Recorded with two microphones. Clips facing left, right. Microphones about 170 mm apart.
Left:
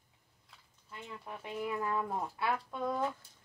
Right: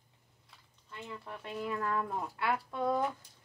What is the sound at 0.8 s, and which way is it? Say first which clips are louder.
Speech: right 1 dB; 10° left (ahead or behind).